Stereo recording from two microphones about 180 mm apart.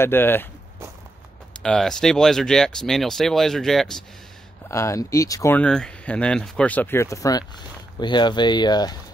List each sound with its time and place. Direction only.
0.0 s speech: 10° left (ahead or behind)
1.6 s speech: 5° left (ahead or behind)
4.6 s speech: 15° left (ahead or behind)